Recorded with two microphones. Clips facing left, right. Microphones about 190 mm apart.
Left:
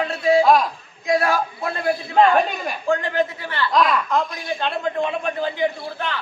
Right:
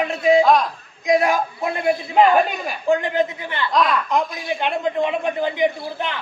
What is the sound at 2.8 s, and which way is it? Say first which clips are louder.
Speech: right 2 dB; 15° right (ahead or behind).